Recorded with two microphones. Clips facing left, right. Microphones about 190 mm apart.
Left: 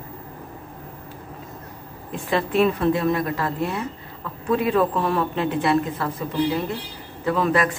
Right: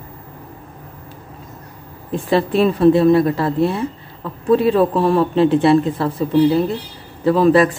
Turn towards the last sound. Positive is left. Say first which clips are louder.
# right 8 dB
turn(degrees=-30)  # may be behind; listen again after turning